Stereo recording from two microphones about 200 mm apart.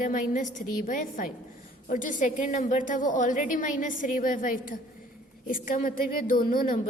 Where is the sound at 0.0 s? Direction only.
40° left (ahead or behind).